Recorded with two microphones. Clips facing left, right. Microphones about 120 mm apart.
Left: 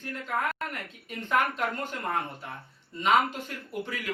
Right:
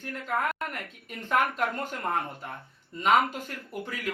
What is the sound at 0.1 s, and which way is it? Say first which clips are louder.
Speech: right 1 dB; centre (ahead or behind).